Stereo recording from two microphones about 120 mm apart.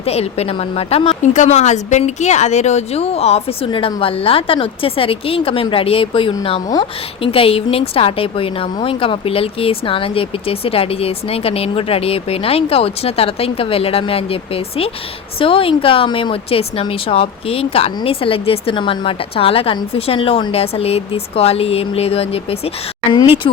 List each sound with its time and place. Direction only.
0.0 s a woman's voice: 60° left (ahead or behind)
3.7 s a woman's voice: 50° left (ahead or behind)